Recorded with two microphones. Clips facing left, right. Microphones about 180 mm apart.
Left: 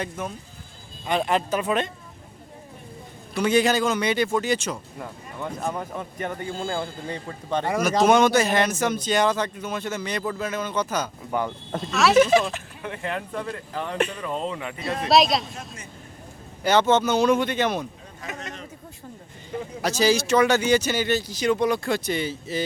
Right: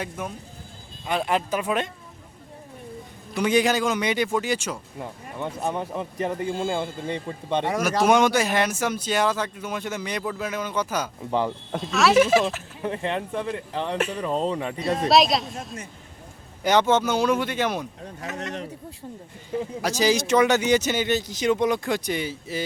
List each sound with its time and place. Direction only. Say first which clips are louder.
0.2 s speech: left 1 dB; 15° right (ahead or behind)
3.3 s speech: left 1 dB; 15° right (ahead or behind)
5.0 s speech: right 2 dB; 20° right (ahead or behind)
6.7 s speech: right 2 dB; 15° right (ahead or behind)
7.6 s speech: left 2 dB; 5° right (ahead or behind)
12.8 s speech: right 4 dB; 30° right (ahead or behind)
14.8 s speech: even; centre (ahead or behind)
16.6 s speech: left 1 dB; 15° right (ahead or behind)
18.3 s a sound: right 5 dB; 70° right (ahead or behind)
19.8 s speech: left 2 dB; 15° right (ahead or behind)